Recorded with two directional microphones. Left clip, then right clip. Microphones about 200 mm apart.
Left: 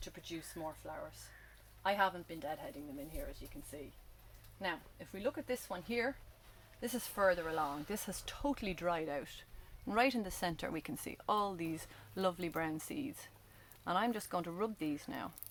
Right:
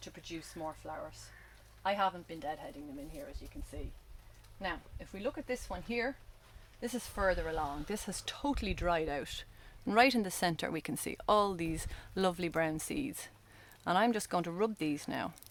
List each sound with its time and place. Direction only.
0.0 s speech: 5° right (ahead or behind)
4.6 s speech: 10° right (ahead or behind); by 15.3 s 50° right (ahead or behind)